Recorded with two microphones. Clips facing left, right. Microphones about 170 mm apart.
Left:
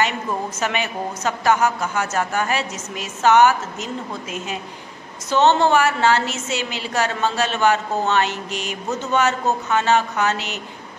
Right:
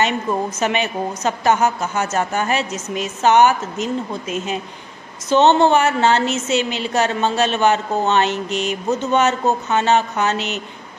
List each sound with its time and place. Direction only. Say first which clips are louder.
0.6 s a woman's voice: right 4 dB; 20° right (ahead or behind)